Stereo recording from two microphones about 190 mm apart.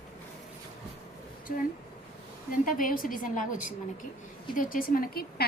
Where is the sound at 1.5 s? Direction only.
45° left (ahead or behind).